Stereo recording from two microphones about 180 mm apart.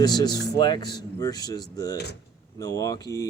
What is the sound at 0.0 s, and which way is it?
Speech, 25° left (ahead or behind).